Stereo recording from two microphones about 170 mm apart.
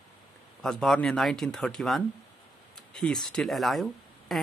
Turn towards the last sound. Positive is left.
turn(degrees=0)  # may be behind; listen again after turning